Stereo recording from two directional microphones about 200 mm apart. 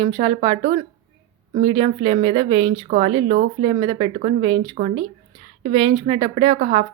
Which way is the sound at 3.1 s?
25° right (ahead or behind).